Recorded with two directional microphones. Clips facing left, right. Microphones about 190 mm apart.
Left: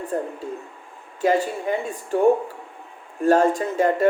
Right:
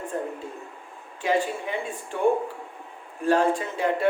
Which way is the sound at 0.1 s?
40° left (ahead or behind).